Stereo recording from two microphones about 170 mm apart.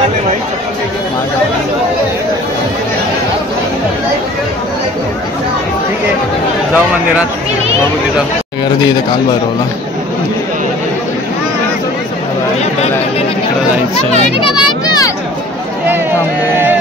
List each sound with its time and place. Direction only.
14.1 s a child's voice: 30° left (ahead or behind)